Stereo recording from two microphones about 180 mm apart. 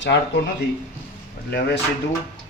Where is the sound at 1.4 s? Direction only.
65° left (ahead or behind).